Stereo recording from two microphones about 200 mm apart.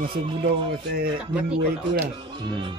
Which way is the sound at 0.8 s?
50° right (ahead or behind).